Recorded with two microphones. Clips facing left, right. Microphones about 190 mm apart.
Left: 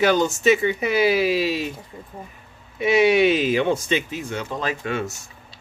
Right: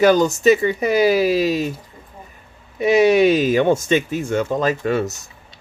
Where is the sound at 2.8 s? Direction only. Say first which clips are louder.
Right 3 dB; 40° right (ahead or behind).